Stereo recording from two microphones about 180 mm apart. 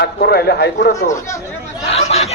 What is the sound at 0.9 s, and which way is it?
Speech, 15° left (ahead or behind).